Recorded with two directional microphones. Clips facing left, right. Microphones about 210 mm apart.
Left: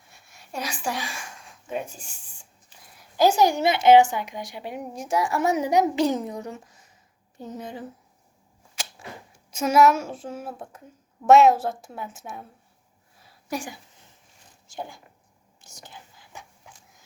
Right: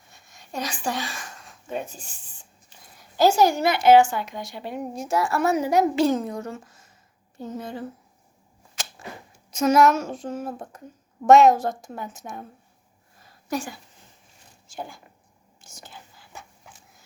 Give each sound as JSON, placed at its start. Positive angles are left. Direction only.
{"t": 0.1, "sound": "a sound", "side_deg": 10}
{"t": 3.2, "sound": "a woman's voice", "side_deg": 15}
{"t": 8.7, "sound": "arrow", "side_deg": 10}
{"t": 9.5, "sound": "a woman's voice", "side_deg": 10}
{"t": 13.2, "sound": "a sound", "side_deg": 10}
{"t": 14.8, "sound": "speech", "side_deg": 20}
{"t": 15.6, "sound": "whispering", "side_deg": 15}